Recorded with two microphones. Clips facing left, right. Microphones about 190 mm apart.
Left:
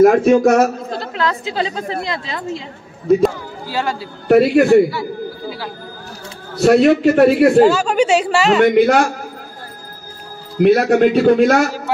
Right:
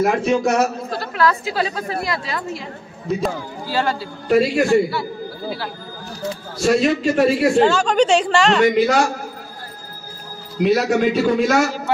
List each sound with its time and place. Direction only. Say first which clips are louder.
0.0 s a man's voice: left 8 dB; 45° left (ahead or behind)
0.8 s a woman's voice: right 1 dB; 25° left (ahead or behind)
3.6 s speech: even; 15° left (ahead or behind)
4.3 s a man's voice: left 5 dB; 60° left (ahead or behind)
6.5 s a man's voice: left 6 dB; 60° left (ahead or behind)
7.5 s speech: left 3 dB; 5° left (ahead or behind)
8.6 s a man's voice: left 4 dB; 55° left (ahead or behind)
10.6 s a man's voice: left 5 dB; 55° left (ahead or behind)